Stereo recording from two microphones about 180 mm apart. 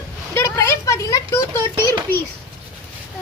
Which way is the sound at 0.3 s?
15° left (ahead or behind).